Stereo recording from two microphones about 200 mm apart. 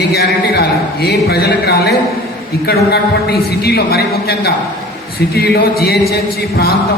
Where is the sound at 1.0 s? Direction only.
50° left (ahead or behind).